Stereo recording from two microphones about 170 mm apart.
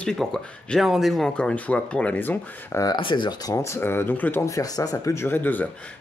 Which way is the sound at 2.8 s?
25° left (ahead or behind).